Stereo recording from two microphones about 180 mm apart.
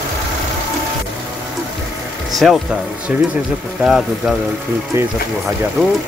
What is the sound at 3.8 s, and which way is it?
Speech, 5° right (ahead or behind).